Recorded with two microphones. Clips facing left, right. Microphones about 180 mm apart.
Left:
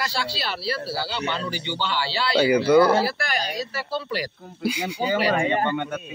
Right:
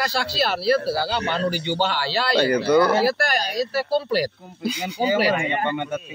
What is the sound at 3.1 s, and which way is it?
Speech, 40° right (ahead or behind).